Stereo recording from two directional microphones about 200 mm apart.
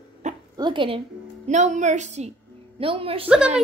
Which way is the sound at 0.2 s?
35° right (ahead or behind).